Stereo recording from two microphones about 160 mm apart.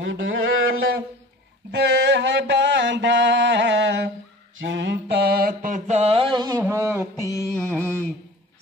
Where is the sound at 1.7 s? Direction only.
90° right.